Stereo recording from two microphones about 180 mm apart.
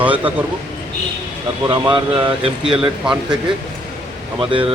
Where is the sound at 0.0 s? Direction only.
10° right (ahead or behind).